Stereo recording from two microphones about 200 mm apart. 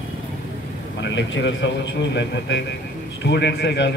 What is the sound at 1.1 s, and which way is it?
Speech, 65° left (ahead or behind).